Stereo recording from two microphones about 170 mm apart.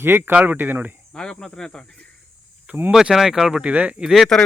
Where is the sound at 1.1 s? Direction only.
5° left (ahead or behind).